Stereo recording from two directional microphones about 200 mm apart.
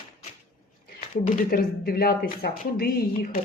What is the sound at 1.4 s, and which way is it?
Speech, 45° left (ahead or behind).